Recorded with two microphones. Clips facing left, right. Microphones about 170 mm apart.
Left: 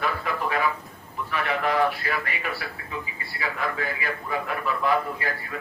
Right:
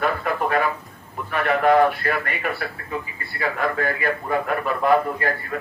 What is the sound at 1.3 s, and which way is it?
A man's voice, 50° right (ahead or behind).